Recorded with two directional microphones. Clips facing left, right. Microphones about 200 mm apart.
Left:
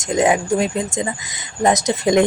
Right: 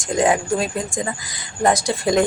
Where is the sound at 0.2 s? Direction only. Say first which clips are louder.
Left 2 dB; 20° left (ahead or behind).